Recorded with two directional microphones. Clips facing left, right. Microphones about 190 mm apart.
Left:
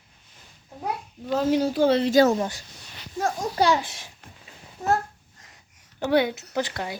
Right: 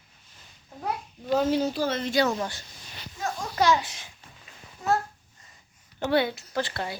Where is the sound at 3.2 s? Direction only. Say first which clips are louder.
Left 4 dB; 45° left (ahead or behind).